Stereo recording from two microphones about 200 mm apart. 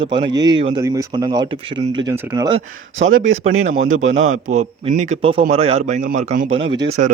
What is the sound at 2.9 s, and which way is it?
Speech, 80° right.